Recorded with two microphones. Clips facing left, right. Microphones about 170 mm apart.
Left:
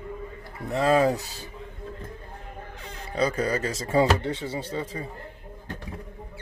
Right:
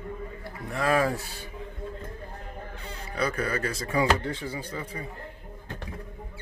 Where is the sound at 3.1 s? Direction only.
25° left (ahead or behind).